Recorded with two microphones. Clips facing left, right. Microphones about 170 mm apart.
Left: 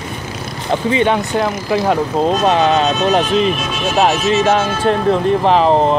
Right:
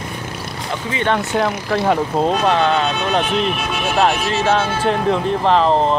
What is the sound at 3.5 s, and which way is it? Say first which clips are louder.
Speech: left 2 dB; 60° right (ahead or behind).